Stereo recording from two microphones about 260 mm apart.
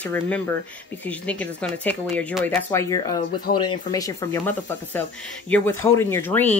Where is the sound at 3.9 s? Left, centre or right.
Centre.